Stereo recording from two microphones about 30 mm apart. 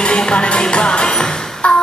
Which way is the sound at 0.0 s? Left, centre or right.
Left.